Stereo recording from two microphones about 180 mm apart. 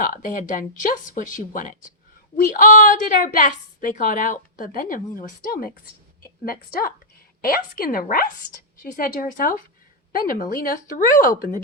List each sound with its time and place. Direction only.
0.0 s a woman's voice: 50° left (ahead or behind)